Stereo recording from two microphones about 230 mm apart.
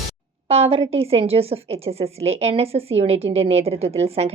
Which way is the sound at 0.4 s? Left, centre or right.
Right.